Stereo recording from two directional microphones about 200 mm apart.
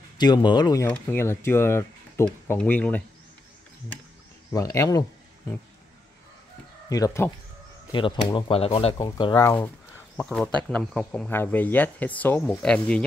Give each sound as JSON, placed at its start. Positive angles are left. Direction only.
{"t": 0.2, "sound": "speech", "side_deg": 20}
{"t": 4.5, "sound": "speech", "side_deg": 15}
{"t": 6.9, "sound": "speech", "side_deg": 20}